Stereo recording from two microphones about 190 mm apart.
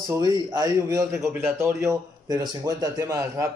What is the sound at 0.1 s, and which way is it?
A man's voice, 20° right (ahead or behind).